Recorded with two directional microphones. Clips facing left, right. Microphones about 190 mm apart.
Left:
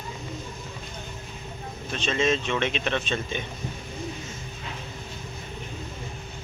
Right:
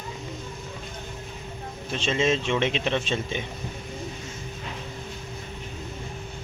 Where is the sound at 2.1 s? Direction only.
20° right (ahead or behind).